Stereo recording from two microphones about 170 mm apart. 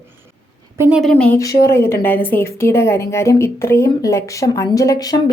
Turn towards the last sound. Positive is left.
turn(degrees=20)  # may be behind; listen again after turning